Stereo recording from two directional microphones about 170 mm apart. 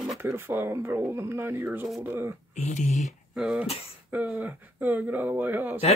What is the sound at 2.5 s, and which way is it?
Speech, 45° left (ahead or behind).